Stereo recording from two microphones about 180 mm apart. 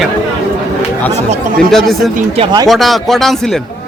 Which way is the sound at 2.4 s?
25° right (ahead or behind).